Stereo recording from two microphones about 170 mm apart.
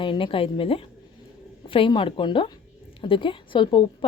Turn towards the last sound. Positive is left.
turn(degrees=30)  # may be behind; listen again after turning